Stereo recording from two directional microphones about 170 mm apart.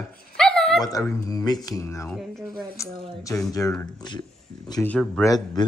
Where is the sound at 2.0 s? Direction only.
Centre (ahead or behind).